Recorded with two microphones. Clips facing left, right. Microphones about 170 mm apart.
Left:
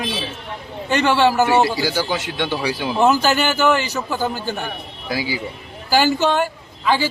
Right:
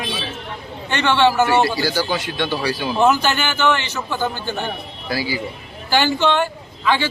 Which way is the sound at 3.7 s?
35° left (ahead or behind).